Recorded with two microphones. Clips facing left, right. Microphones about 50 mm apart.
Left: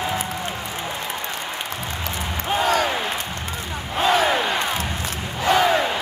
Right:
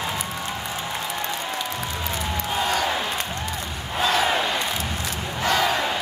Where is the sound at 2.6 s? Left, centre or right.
Left.